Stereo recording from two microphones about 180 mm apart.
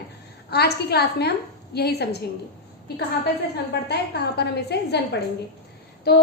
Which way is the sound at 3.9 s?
65° left (ahead or behind).